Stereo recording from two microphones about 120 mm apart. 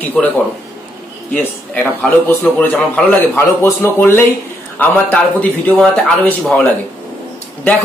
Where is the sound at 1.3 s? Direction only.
10° left (ahead or behind).